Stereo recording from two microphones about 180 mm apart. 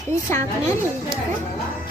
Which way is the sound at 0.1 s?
15° left (ahead or behind).